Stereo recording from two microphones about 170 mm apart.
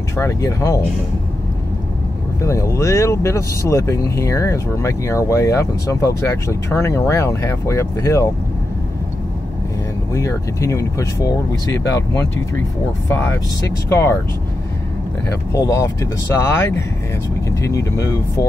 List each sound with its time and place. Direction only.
0.1 s speech: 15° left (ahead or behind)
2.4 s speech: 15° left (ahead or behind)
10.1 s speech: 15° left (ahead or behind)
15.5 s speech: 15° left (ahead or behind)